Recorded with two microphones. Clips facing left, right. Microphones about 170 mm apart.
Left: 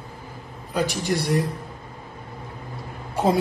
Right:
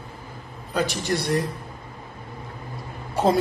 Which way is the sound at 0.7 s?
10° left (ahead or behind).